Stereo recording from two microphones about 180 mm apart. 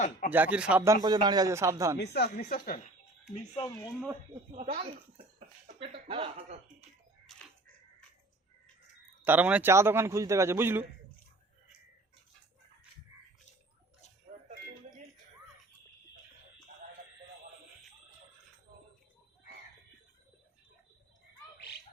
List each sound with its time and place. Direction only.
0.3 s speech: 10° right (ahead or behind)
1.0 s a man's voice: 20° right (ahead or behind)
2.0 s speech: 65° left (ahead or behind)
3.3 s speech: 35° left (ahead or behind)
4.5 s speech: 40° right (ahead or behind)
7.3 s a sound: centre (ahead or behind)
9.2 s speech: 10° right (ahead or behind)